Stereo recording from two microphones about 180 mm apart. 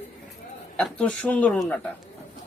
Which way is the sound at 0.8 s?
5° left (ahead or behind).